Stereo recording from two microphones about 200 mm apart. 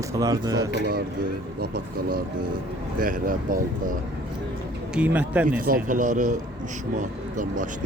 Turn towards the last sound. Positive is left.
turn(degrees=-40)  # may be behind; listen again after turning